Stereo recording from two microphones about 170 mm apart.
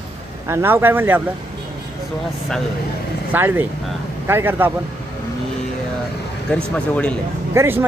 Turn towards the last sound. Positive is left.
turn(degrees=-15)  # may be behind; listen again after turning